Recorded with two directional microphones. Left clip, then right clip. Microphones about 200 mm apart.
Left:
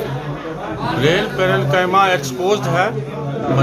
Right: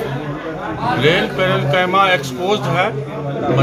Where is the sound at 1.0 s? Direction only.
10° left (ahead or behind).